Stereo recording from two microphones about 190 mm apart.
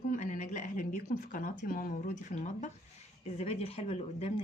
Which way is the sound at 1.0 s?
45° left (ahead or behind).